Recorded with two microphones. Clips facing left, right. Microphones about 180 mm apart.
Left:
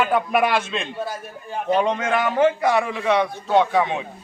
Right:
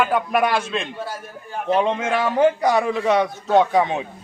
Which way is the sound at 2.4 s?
40° right (ahead or behind).